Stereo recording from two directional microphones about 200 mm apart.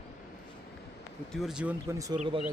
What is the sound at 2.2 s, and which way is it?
Speech, 30° right (ahead or behind).